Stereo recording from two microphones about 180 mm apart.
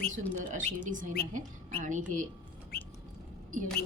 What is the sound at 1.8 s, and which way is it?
Speech, 45° right (ahead or behind).